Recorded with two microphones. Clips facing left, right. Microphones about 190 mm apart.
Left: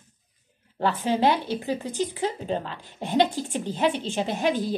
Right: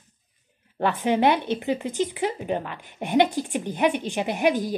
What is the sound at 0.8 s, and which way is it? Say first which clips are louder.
Speech: right 2 dB; 20° right (ahead or behind).